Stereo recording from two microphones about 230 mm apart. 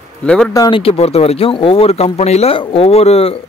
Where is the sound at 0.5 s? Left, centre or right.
Centre.